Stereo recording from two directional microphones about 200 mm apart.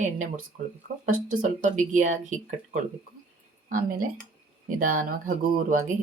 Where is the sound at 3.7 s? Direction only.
40° right (ahead or behind).